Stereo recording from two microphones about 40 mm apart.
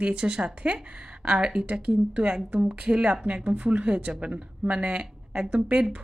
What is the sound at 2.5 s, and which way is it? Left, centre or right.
A woman's voice, right.